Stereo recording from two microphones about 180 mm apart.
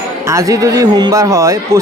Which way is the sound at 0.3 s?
15° right (ahead or behind).